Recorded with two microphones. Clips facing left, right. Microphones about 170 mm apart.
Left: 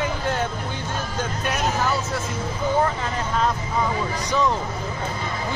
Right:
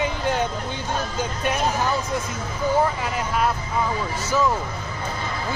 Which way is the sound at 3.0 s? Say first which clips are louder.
Even; 10° right (ahead or behind).